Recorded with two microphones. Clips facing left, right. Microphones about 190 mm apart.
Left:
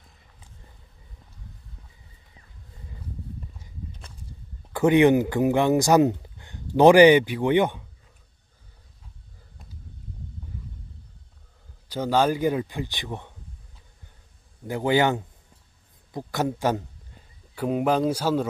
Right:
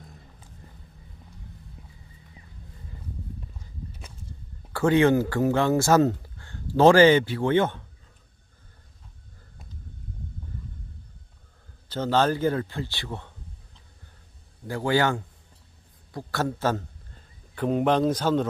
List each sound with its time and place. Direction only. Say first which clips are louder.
1.8 s horse: right 5 dB; 10° right (ahead or behind)
4.7 s speech: left 2 dB; 15° left (ahead or behind)
11.9 s speech: left 1 dB; 10° left (ahead or behind)
14.7 s a man's voice: left 2 dB; 20° left (ahead or behind)